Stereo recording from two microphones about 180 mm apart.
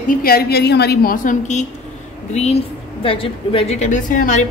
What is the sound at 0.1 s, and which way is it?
A woman's voice, 55° left (ahead or behind).